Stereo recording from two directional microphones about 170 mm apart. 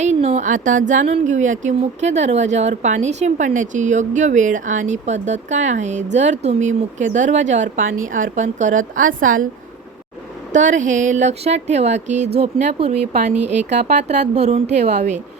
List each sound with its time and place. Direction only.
0.0 s speech: 40° right (ahead or behind)
10.5 s speech: 45° right (ahead or behind)